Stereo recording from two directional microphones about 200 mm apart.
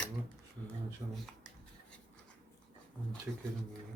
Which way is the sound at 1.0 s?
25° right (ahead or behind).